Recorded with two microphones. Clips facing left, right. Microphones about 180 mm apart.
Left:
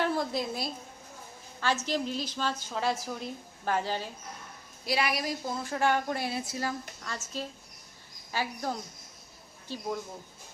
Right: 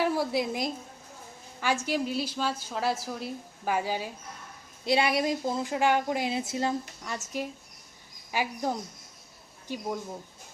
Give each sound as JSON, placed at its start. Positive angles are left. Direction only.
{"t": 0.0, "sound": "a woman's voice", "side_deg": -10}
{"t": 4.9, "sound": "a woman's voice", "side_deg": -25}